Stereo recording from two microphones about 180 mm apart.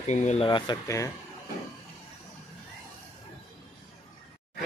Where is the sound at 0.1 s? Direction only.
40° left (ahead or behind).